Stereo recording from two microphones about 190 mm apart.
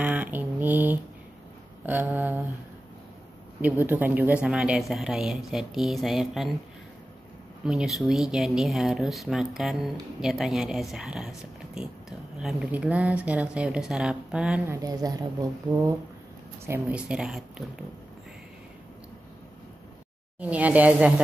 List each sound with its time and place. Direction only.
0.0 s a sound: 10° right (ahead or behind)
1.9 s speech: 10° right (ahead or behind)
3.6 s speech: 10° right (ahead or behind)
7.6 s speech: centre (ahead or behind)
14.8 s a woman's voice: 20° right (ahead or behind); by 17.8 s centre (ahead or behind)
20.3 s speech: 10° right (ahead or behind)